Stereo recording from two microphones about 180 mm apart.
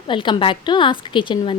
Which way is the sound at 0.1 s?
25° left (ahead or behind).